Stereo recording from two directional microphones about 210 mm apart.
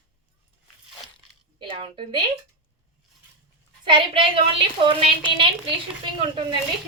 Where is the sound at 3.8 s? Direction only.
25° right (ahead or behind).